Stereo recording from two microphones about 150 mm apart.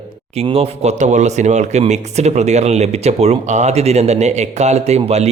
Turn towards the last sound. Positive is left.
turn(degrees=-45)  # may be behind; listen again after turning